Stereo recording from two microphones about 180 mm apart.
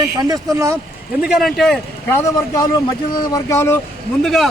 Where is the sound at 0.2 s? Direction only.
20° right (ahead or behind).